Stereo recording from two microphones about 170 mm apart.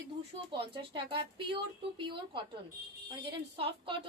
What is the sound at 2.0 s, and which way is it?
Speech, 30° right (ahead or behind).